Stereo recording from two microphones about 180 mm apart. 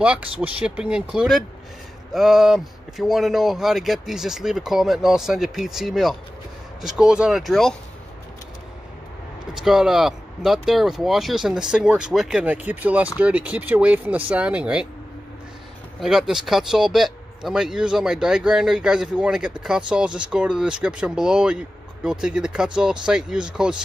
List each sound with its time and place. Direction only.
0.0 s speech: 5° right (ahead or behind)
9.5 s speech: centre (ahead or behind)
16.0 s speech: centre (ahead or behind)